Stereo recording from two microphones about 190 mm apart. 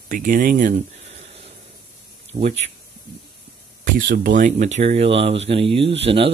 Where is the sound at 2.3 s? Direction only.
35° right (ahead or behind).